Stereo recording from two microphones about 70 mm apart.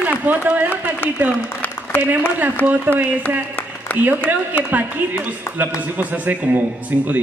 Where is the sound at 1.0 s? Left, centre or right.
Left.